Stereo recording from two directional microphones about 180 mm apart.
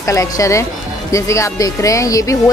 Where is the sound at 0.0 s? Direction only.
15° left (ahead or behind).